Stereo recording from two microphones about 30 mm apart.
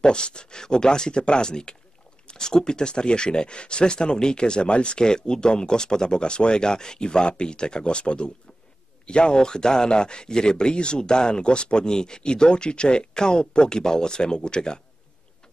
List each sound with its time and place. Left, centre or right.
0.0 s speech: left